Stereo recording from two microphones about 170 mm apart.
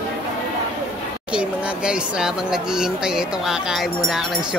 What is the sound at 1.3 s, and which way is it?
Speech, 5° right (ahead or behind).